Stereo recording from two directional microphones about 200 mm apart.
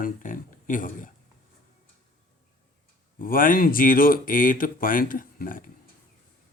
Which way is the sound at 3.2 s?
45° left (ahead or behind).